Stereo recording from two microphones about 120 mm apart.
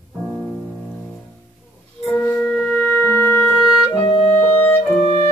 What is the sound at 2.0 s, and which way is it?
Music, 10° left (ahead or behind).